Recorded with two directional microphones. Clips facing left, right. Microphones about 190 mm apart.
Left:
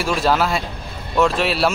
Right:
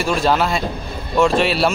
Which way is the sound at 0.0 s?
5° left (ahead or behind).